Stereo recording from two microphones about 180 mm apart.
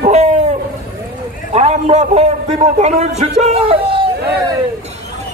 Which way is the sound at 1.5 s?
40° right (ahead or behind).